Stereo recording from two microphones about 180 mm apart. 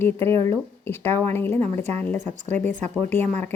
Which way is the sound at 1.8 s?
35° right (ahead or behind).